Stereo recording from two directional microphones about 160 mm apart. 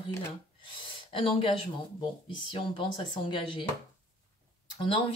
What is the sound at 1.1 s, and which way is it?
Speech, 35° left (ahead or behind).